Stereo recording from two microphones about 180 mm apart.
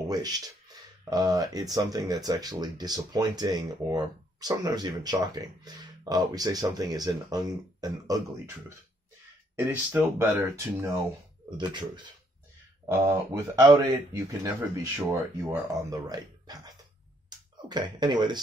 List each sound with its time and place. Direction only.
0.1 s speech: 20° right (ahead or behind)
9.6 s speech: 10° right (ahead or behind)
12.8 s speech: 15° right (ahead or behind)